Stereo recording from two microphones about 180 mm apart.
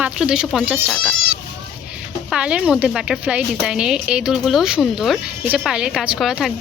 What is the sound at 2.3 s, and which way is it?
Speech, 5° right (ahead or behind).